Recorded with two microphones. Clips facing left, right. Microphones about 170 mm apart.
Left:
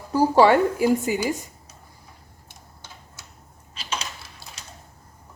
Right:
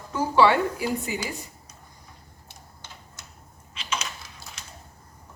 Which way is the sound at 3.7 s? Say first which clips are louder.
Even; 35° left (ahead or behind).